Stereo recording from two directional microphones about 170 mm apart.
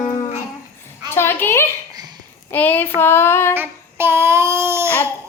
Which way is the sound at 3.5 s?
10° right (ahead or behind).